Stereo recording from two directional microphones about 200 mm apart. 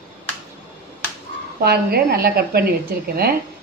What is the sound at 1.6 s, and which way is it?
A man's voice, 50° right (ahead or behind).